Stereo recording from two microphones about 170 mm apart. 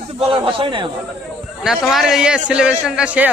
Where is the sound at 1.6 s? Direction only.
5° right (ahead or behind).